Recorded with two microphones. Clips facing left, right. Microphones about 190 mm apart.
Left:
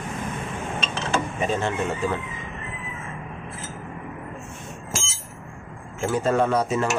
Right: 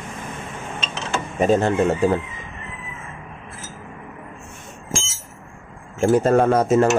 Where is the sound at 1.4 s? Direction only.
40° right (ahead or behind).